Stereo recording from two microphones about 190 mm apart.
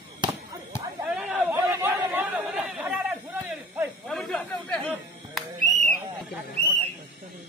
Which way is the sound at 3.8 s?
Centre (ahead or behind).